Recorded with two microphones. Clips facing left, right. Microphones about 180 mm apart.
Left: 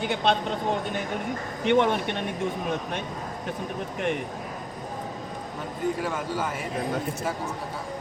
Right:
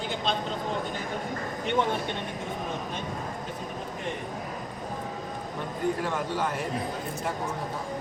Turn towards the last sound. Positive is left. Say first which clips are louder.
# even
turn(degrees=5)  # may be behind; listen again after turning